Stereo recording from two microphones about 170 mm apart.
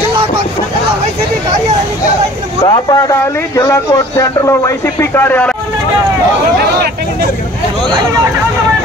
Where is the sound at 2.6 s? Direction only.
25° left (ahead or behind).